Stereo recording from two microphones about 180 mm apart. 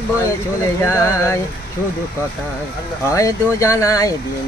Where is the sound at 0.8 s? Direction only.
15° left (ahead or behind).